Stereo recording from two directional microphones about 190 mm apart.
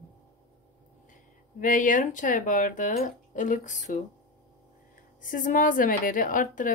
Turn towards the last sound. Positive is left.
turn(degrees=45)  # may be behind; listen again after turning